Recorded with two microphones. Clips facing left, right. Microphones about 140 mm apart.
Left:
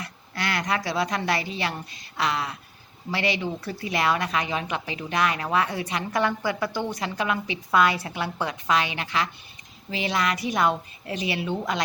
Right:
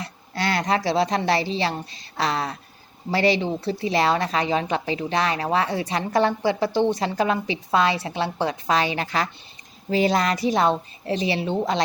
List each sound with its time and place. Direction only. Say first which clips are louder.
0.0 s a woman's voice: right 4 dB; 30° right (ahead or behind)